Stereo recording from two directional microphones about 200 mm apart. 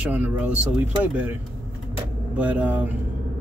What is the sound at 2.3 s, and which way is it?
Speech, 5° right (ahead or behind).